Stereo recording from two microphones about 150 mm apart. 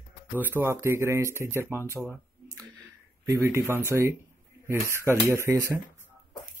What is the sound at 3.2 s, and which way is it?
Speech, 15° right (ahead or behind).